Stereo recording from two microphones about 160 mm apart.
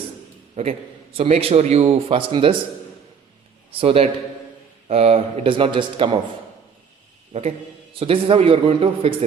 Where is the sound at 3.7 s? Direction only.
35° right (ahead or behind).